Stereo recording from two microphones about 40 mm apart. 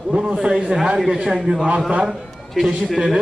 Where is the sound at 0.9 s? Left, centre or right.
Centre.